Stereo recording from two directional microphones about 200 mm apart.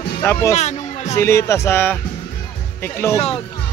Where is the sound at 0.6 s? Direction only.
35° left (ahead or behind).